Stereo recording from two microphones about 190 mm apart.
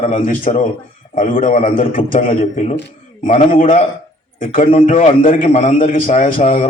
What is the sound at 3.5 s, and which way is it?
A man's voice, 45° left (ahead or behind).